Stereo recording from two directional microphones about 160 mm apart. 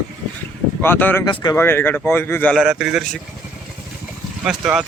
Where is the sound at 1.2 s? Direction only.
25° left (ahead or behind).